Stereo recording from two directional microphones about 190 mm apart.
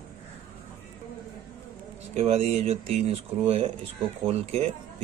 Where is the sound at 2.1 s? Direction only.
35° right (ahead or behind).